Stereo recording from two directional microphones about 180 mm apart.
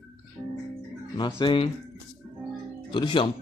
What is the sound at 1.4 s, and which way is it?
Speech, 30° left (ahead or behind).